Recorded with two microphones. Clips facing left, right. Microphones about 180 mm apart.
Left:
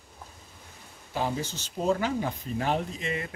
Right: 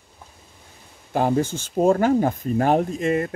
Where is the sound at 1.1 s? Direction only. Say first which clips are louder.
Right 10 dB; 50° right (ahead or behind).